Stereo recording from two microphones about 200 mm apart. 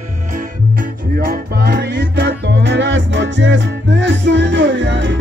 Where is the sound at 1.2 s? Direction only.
50° right (ahead or behind).